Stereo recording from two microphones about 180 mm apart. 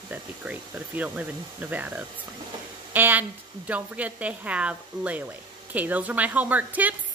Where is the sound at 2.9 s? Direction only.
10° right (ahead or behind).